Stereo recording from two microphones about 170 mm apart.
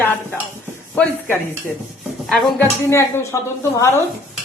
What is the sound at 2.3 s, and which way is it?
Speech, 5° left (ahead or behind).